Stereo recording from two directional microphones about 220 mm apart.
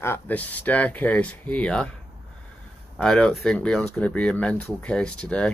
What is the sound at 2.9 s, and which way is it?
Speech, 5° left (ahead or behind).